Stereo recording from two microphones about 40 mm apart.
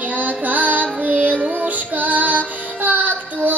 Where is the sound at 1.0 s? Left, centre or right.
Right.